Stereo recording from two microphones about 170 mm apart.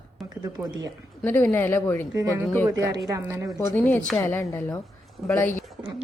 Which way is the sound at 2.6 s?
20° right (ahead or behind).